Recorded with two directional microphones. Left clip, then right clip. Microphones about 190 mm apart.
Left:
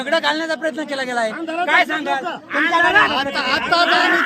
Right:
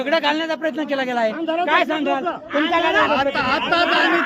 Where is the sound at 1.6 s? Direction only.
35° right (ahead or behind).